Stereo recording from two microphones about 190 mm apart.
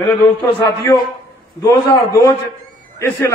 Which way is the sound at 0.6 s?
20° left (ahead or behind).